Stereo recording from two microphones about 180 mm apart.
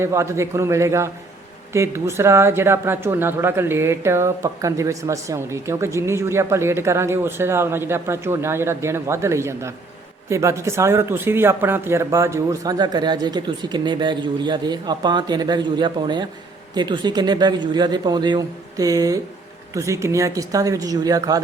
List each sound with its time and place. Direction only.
0.0 s speech: 15° right (ahead or behind)